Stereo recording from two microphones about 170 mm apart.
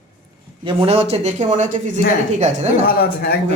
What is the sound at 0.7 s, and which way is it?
A woman's voice, 35° right (ahead or behind).